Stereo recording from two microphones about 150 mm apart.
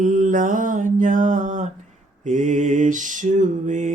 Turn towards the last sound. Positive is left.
turn(degrees=-55)  # may be behind; listen again after turning